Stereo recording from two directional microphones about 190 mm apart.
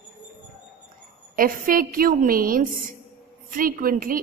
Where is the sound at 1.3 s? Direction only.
50° right (ahead or behind).